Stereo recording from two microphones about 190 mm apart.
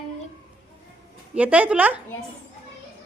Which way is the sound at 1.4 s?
5° right (ahead or behind).